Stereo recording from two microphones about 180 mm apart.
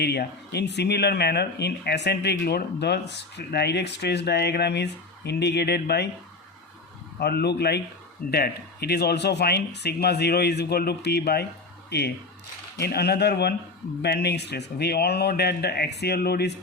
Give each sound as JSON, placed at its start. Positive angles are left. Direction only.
{"t": 0.0, "sound": "speech", "side_deg": 65}
{"t": 7.2, "sound": "speech", "side_deg": 65}